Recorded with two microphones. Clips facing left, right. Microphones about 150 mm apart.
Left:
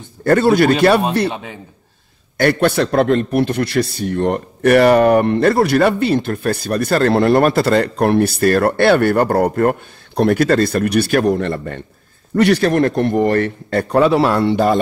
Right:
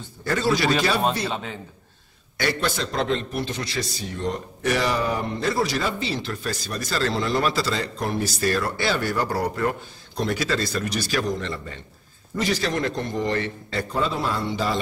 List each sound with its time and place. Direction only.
0.2 s a man's voice: 60° left (ahead or behind)
2.3 s a man's voice: 60° left (ahead or behind)